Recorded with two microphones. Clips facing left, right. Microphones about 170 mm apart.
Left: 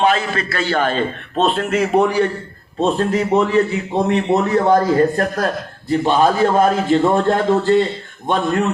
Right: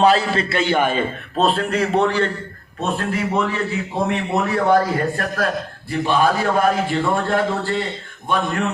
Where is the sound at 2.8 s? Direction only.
35° left (ahead or behind).